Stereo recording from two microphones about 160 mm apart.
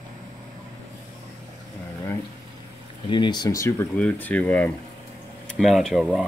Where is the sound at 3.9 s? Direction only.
10° left (ahead or behind).